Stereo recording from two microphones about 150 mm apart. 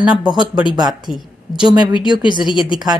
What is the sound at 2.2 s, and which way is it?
Speech, 30° left (ahead or behind).